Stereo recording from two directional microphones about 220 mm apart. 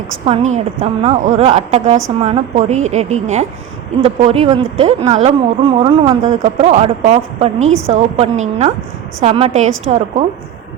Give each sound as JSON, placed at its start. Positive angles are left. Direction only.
{"t": 0.3, "sound": "a woman's voice", "side_deg": -30}